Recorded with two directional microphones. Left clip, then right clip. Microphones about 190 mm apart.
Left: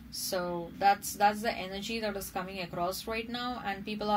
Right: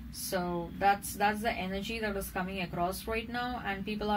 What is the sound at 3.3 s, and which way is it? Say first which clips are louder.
Music: even; 50° left (ahead or behind).